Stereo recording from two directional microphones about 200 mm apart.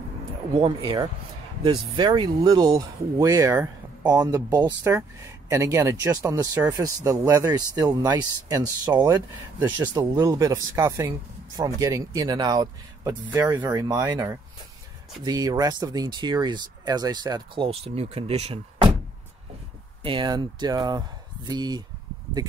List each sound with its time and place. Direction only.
0.6 s speech: 25° right (ahead or behind)
20.0 s speech: 25° right (ahead or behind)